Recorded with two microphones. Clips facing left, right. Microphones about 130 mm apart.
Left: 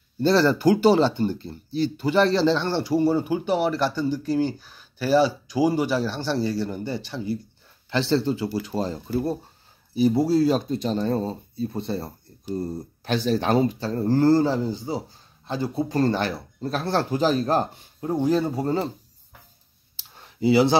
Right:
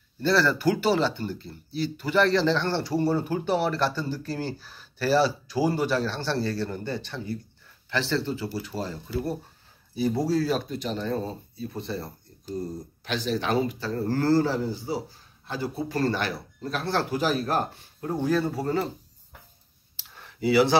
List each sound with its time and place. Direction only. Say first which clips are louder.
0.2 s speech: left 4 dB; 30° left (ahead or behind)
2.3 s speech: left 2 dB; 15° left (ahead or behind)
3.2 s speech: left 3 dB; centre (ahead or behind)
7.9 s speech: left 5 dB; 25° left (ahead or behind)
10.1 s speech: left 5 dB; 15° left (ahead or behind)
10.5 s speech: left 5 dB; 30° left (ahead or behind)
13.0 s speech: left 5 dB; 40° left (ahead or behind); by 18.9 s 25° left (ahead or behind)
20.2 s a sound: left 2 dB; 25° left (ahead or behind)